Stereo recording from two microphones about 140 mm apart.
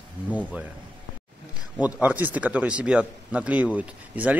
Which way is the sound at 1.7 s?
10° right (ahead or behind).